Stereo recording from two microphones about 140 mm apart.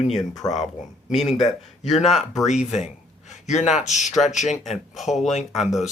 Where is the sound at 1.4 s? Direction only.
Centre (ahead or behind).